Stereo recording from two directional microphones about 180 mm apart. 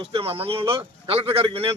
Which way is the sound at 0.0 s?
30° right (ahead or behind).